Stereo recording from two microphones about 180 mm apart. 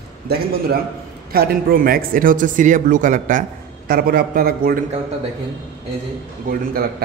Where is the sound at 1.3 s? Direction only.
60° right (ahead or behind).